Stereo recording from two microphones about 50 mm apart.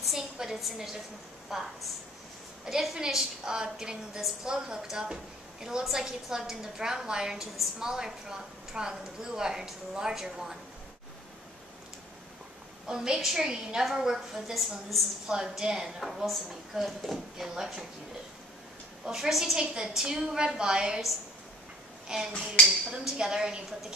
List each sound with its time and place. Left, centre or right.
0.0 s a sound: centre
1.5 s a woman's voice: centre
12.8 s a woman's voice: centre
15.3 s a woman's voice: centre
16.0 s a woman's voice: centre
19.0 s a woman's voice: centre
22.0 s finger snapping: centre
22.8 s a woman's voice: centre